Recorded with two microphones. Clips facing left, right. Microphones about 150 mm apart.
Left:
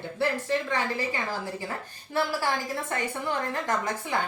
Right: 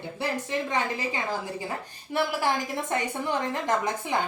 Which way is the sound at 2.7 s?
20° right (ahead or behind).